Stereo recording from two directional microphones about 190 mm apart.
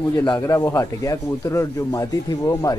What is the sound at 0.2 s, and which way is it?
A man's voice, 20° left (ahead or behind).